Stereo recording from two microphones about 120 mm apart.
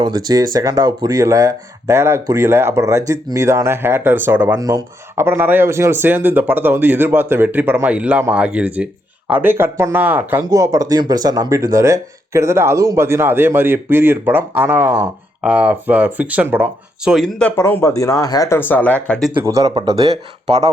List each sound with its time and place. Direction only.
0.0 s speech: 35° right (ahead or behind); by 4.5 s 15° right (ahead or behind)
4.5 s speech: 30° right (ahead or behind)
10.4 s speech: 30° right (ahead or behind); by 17.2 s 5° right (ahead or behind)
17.6 s a man's voice: 20° left (ahead or behind)
19.4 s speech: 25° right (ahead or behind)